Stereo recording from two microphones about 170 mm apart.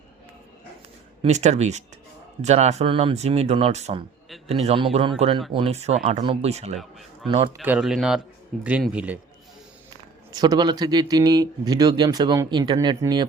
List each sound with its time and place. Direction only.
1.2 s speech: 40° right (ahead or behind)
7.6 s a man's voice: 5° right (ahead or behind)
10.3 s speech: 25° right (ahead or behind)